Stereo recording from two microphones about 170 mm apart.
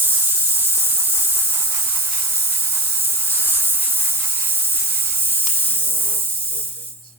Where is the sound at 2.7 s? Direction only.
10° right (ahead or behind).